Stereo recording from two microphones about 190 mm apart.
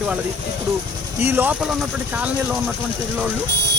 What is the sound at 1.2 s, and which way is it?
Speech, 10° right (ahead or behind).